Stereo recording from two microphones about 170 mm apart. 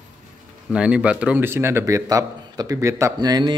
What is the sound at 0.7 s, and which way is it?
A man's voice, 5° right (ahead or behind).